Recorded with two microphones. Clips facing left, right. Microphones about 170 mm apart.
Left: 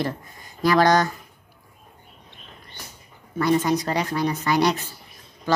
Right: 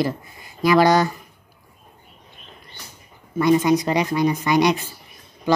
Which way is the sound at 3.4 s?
15° right (ahead or behind).